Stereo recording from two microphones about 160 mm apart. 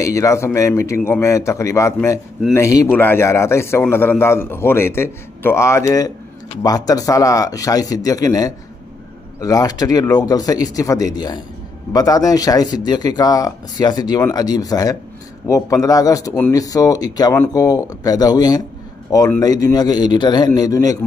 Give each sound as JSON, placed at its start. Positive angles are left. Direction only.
{"t": 0.0, "sound": "a man's voice", "side_deg": 20}